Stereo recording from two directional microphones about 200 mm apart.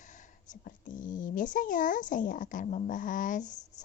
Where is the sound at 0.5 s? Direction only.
40° left (ahead or behind).